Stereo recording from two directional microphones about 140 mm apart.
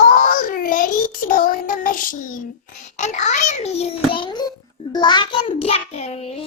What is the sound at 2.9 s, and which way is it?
Child singing, 60° left (ahead or behind).